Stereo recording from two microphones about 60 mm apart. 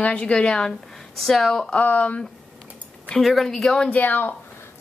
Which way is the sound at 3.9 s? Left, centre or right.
Left.